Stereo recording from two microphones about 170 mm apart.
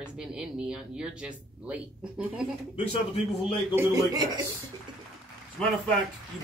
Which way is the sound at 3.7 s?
15° right (ahead or behind).